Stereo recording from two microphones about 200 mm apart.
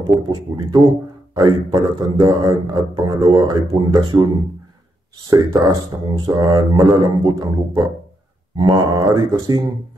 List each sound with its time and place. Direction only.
0.3 s a man's voice: 20° right (ahead or behind)